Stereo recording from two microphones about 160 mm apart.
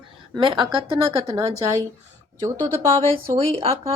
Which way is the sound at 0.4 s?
30° right (ahead or behind).